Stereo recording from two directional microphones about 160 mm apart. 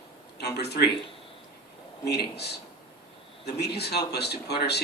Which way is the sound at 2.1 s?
90° left.